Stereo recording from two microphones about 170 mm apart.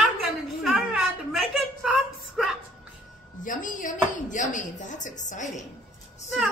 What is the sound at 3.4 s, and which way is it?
Speech, 50° left (ahead or behind).